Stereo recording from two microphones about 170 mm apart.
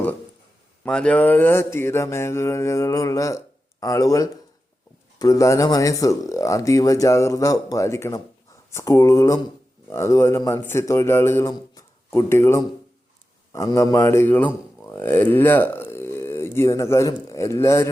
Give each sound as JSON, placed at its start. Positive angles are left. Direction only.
{"t": 0.9, "sound": "mantra", "side_deg": 5}
{"t": 5.2, "sound": "speech", "side_deg": 20}
{"t": 9.9, "sound": "mantra", "side_deg": 15}
{"t": 14.8, "sound": "speech", "side_deg": 15}